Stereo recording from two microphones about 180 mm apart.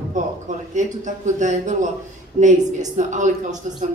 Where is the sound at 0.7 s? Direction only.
45° right (ahead or behind).